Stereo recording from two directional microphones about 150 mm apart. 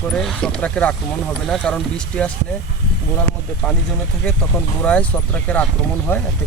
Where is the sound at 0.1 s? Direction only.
5° left (ahead or behind).